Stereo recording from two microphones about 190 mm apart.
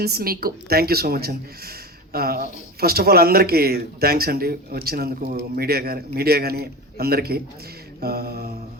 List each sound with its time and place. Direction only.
0.0 s a woman's voice: 55° right (ahead or behind)